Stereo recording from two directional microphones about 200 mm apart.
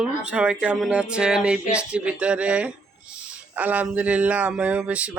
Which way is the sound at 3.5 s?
10° right (ahead or behind).